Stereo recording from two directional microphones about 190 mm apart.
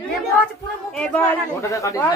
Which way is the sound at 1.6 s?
15° left (ahead or behind).